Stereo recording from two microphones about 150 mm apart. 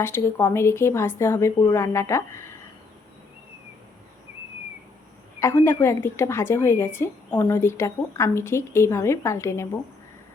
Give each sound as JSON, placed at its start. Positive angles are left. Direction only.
{"t": 0.0, "sound": "a woman's voice", "side_deg": 15}
{"t": 5.4, "sound": "a woman's voice", "side_deg": 15}